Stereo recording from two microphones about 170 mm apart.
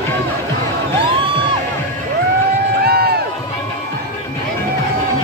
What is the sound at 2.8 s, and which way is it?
Crowd, 65° right (ahead or behind).